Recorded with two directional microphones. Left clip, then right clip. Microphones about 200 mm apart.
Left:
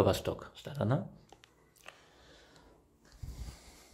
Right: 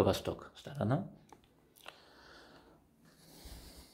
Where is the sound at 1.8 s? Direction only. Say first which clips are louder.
Right 1 dB; 10° right (ahead or behind).